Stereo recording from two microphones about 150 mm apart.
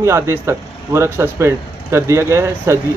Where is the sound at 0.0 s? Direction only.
15° right (ahead or behind).